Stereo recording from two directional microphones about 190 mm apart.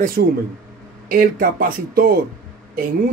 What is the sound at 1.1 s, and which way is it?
Speech, 50° right (ahead or behind).